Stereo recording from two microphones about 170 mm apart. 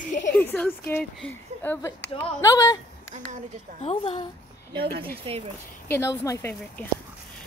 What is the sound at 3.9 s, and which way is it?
Speech, 35° left (ahead or behind).